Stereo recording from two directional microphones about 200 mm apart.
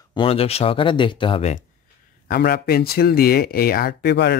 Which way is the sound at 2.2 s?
50° left (ahead or behind).